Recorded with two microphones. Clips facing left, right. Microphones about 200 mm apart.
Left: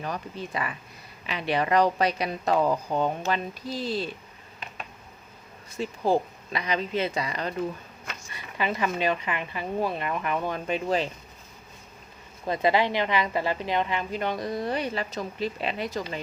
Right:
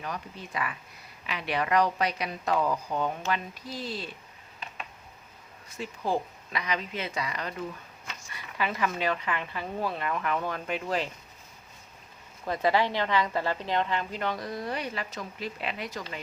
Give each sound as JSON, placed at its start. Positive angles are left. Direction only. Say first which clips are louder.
{"t": 0.0, "sound": "speech", "louder": "left 4 dB", "side_deg": 35}
{"t": 5.8, "sound": "speech", "louder": "left 5 dB", "side_deg": 30}
{"t": 12.5, "sound": "a woman's voice", "louder": "left 2 dB", "side_deg": 20}